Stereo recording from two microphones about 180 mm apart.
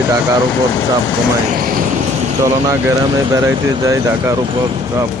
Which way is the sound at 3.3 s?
15° right (ahead or behind).